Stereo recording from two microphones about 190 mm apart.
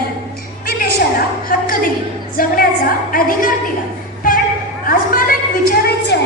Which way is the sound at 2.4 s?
50° left (ahead or behind).